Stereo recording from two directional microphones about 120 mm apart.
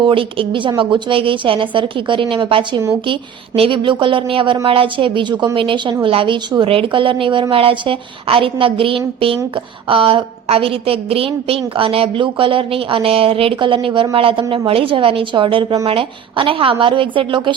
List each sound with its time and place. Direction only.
0.0 s a woman's voice: 45° right (ahead or behind)